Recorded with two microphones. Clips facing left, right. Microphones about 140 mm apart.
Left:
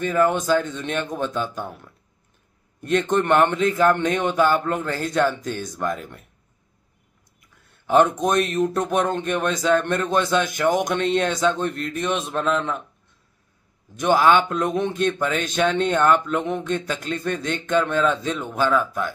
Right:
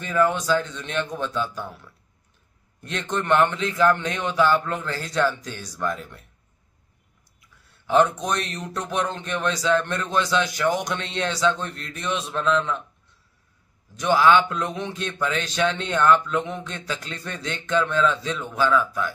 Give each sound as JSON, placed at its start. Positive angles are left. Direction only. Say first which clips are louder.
{"t": 0.0, "sound": "a man's voice", "louder": "left 2 dB", "side_deg": 45}
{"t": 2.8, "sound": "a man's voice", "louder": "left 8 dB", "side_deg": 50}
{"t": 7.3, "sound": "a man's voice", "louder": "left 1 dB", "side_deg": 50}
{"t": 13.9, "sound": "a man's voice", "louder": "left 1 dB", "side_deg": 50}